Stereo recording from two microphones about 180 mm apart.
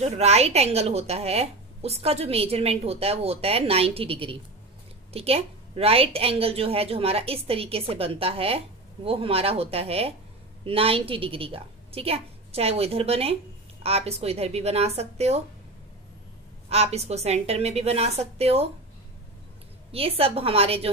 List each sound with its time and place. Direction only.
0.0 s a woman's voice: 35° right (ahead or behind)
16.6 s a woman's voice: 35° right (ahead or behind)
19.9 s a woman's voice: 35° right (ahead or behind)